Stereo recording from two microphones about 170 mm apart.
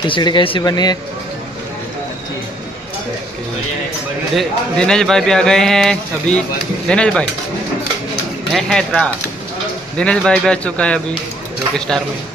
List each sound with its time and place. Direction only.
0.0 s speech: 25° left (ahead or behind)
4.4 s speech: 5° left (ahead or behind)
8.5 s speech: centre (ahead or behind)